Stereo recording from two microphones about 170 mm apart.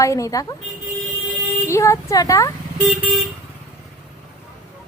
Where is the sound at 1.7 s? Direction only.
15° left (ahead or behind).